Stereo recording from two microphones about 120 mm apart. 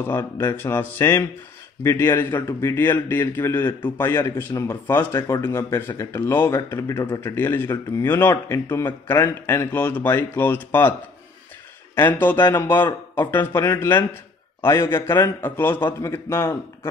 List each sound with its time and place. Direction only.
0.0 s a man's voice: 20° left (ahead or behind)